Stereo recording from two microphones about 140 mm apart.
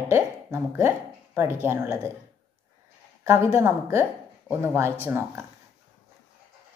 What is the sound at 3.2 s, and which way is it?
A woman's voice, 20° right (ahead or behind).